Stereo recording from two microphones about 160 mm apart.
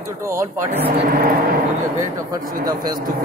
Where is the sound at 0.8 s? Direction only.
70° right (ahead or behind).